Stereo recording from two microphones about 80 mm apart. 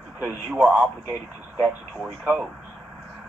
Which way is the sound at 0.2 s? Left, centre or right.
Right.